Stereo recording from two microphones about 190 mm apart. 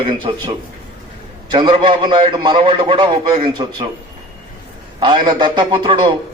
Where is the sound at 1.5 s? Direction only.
25° right (ahead or behind).